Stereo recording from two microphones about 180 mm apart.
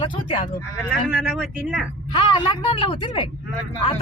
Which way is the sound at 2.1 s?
30° left (ahead or behind).